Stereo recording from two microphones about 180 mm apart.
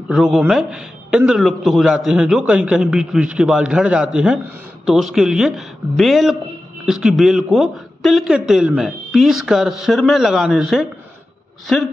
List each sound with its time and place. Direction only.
0.1 s a man's voice: centre (ahead or behind)